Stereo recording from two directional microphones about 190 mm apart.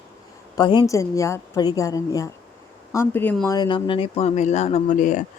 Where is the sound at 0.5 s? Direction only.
20° left (ahead or behind).